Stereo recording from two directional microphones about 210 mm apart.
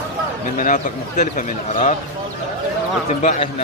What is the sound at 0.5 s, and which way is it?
A man's voice, 35° left (ahead or behind).